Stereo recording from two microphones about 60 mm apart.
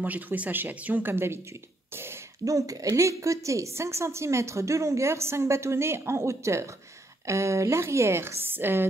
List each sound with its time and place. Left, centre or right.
0.0 s speech: right
1.1 s a woman's voice: right
1.9 s a sound: right
2.4 s a woman's voice: right